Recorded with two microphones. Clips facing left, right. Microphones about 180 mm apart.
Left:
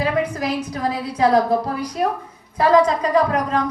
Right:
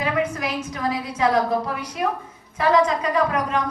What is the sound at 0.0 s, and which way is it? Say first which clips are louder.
A woman's voice: left 3 dB; 35° left (ahead or behind).